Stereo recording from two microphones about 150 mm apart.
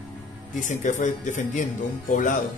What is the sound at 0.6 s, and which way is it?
Speech, 55° left (ahead or behind).